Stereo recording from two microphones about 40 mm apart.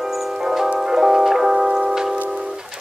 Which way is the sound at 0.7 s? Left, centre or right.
Centre.